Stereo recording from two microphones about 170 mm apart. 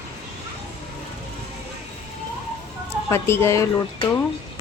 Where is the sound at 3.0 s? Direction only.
15° left (ahead or behind).